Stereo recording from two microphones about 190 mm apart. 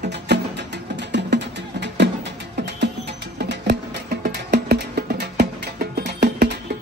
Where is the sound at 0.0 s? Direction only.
65° right (ahead or behind).